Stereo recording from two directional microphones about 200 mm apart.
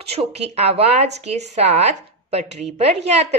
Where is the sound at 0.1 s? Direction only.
30° right (ahead or behind).